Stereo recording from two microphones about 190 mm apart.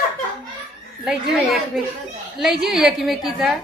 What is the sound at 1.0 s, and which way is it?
A woman's voice, centre (ahead or behind).